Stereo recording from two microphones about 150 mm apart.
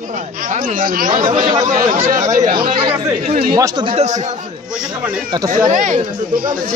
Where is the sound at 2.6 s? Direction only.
35° right (ahead or behind).